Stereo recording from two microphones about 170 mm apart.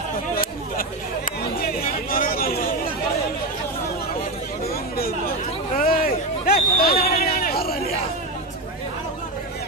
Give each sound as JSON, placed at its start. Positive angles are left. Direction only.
{"t": 0.4, "sound": "chatter", "side_deg": 55}
{"t": 5.8, "sound": "hubbub", "side_deg": 55}